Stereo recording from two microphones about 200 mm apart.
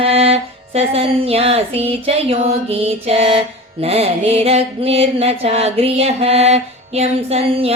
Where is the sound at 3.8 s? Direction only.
30° right (ahead or behind).